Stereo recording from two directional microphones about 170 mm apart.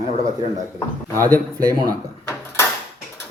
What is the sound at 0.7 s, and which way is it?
Speech, 10° left (ahead or behind).